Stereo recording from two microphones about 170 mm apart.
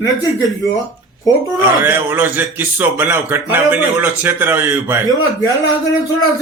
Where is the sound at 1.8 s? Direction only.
10° right (ahead or behind).